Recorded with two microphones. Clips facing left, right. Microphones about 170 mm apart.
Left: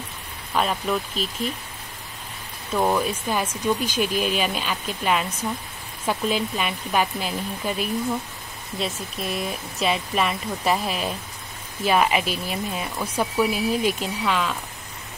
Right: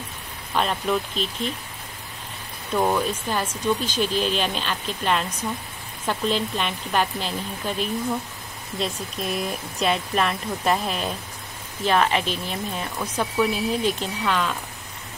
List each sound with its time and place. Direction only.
0.6 s speech: centre (ahead or behind)
2.7 s speech: 5° left (ahead or behind)